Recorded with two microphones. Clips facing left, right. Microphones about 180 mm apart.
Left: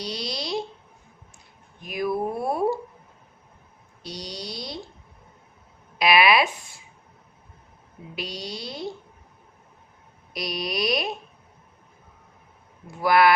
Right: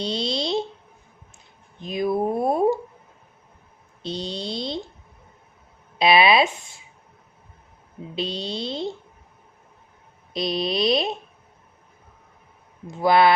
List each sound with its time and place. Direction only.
0.0 s a sound: 25° right (ahead or behind)
1.8 s a sound: 25° right (ahead or behind)
4.0 s speech: 25° right (ahead or behind)
6.0 s speech: 25° right (ahead or behind)
8.1 s speech: 25° right (ahead or behind)
10.3 s speech: 25° right (ahead or behind)
12.9 s speech: 25° right (ahead or behind)